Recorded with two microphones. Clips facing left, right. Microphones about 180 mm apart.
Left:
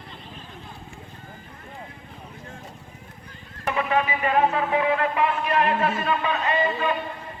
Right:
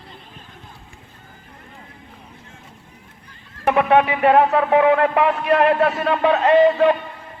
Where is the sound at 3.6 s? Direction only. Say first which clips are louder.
Right 8 dB; 70° right (ahead or behind).